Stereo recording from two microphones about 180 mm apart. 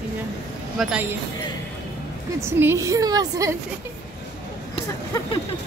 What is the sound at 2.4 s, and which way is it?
A woman's voice, 15° right (ahead or behind).